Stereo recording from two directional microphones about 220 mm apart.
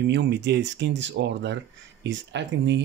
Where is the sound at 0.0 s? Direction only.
55° right (ahead or behind).